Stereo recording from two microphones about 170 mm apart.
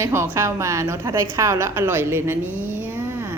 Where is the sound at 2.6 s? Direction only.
10° right (ahead or behind).